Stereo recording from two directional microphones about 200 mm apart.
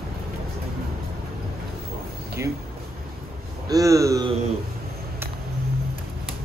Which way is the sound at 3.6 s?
15° right (ahead or behind).